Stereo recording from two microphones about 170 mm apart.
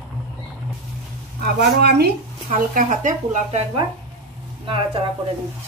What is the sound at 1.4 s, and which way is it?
Speech, 70° right (ahead or behind).